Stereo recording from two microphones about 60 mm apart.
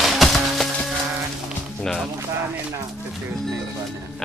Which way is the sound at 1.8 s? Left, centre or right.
Centre.